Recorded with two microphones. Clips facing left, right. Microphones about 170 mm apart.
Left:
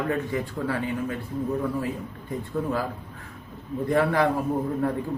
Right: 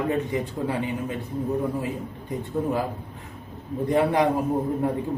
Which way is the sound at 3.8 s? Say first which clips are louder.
Right 1 dB; 20° right (ahead or behind).